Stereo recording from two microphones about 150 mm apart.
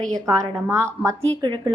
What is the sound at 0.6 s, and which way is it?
Speech, 15° right (ahead or behind).